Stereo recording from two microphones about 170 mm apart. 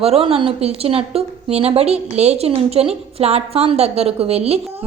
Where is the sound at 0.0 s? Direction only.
35° right (ahead or behind).